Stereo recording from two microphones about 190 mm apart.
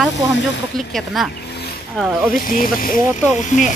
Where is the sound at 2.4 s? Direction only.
45° left (ahead or behind).